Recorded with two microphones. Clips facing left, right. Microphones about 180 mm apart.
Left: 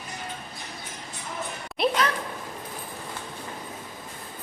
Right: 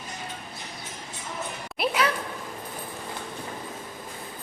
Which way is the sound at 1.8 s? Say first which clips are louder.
Left 1 dB; 10° right (ahead or behind).